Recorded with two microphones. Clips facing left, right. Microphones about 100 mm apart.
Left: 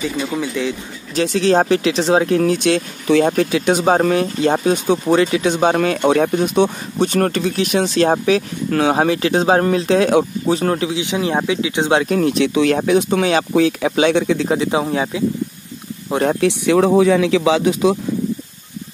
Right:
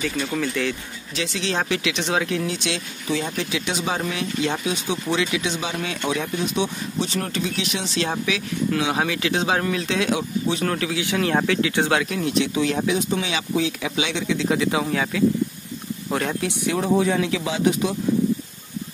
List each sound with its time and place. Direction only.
0.0 s speech: 20° left (ahead or behind)
1.1 s speech: 45° left (ahead or behind); by 12.0 s 20° left (ahead or behind)
12.2 s speech: 55° left (ahead or behind)
14.5 s speech: 30° left (ahead or behind)
16.3 s speech: 90° left